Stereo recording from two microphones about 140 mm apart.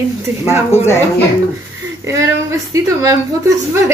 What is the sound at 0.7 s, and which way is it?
Speech, 20° left (ahead or behind).